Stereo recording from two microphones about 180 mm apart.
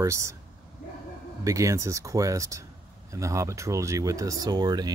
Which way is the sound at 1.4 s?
15° right (ahead or behind).